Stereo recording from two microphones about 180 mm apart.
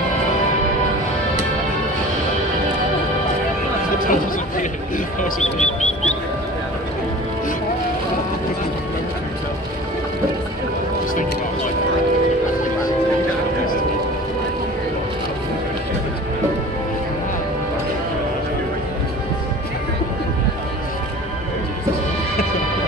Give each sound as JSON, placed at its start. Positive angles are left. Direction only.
{"t": 4.1, "sound": "music", "side_deg": 45}